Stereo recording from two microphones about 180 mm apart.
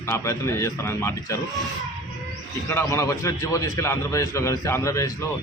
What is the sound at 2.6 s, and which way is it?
A man's voice, 15° left (ahead or behind).